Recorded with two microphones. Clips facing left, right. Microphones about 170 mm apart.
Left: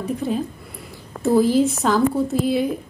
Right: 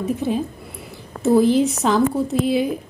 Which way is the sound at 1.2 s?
Centre (ahead or behind).